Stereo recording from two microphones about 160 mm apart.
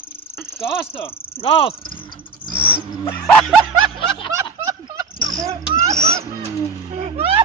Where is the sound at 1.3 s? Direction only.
35° left (ahead or behind).